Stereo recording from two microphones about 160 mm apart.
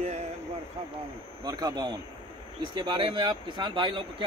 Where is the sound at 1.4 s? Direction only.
25° right (ahead or behind).